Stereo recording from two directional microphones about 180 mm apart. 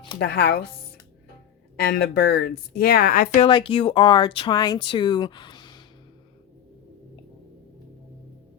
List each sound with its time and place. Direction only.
0.2 s speech: 60° left (ahead or behind)
1.7 s speech: 60° left (ahead or behind)
3.4 s speech: 30° left (ahead or behind)